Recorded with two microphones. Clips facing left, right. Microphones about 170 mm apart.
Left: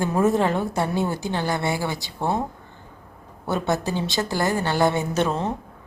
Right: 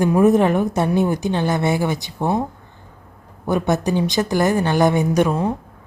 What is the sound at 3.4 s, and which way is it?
A woman's voice, 15° right (ahead or behind).